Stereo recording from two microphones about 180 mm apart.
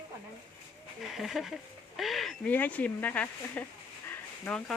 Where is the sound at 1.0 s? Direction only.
Centre (ahead or behind).